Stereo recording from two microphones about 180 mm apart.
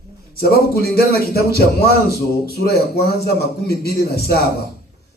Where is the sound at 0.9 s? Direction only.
60° left (ahead or behind).